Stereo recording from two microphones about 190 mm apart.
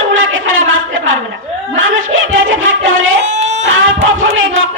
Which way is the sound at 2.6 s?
90° right.